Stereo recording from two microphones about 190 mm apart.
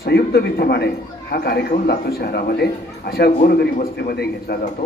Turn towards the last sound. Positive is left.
turn(degrees=55)  # may be behind; listen again after turning